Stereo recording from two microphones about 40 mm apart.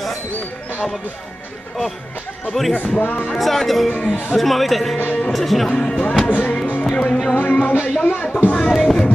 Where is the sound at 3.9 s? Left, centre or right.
Left.